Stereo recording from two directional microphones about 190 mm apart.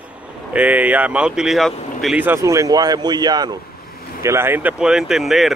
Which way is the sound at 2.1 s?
10° right (ahead or behind).